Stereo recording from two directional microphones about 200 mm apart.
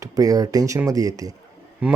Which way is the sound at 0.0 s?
20° right (ahead or behind).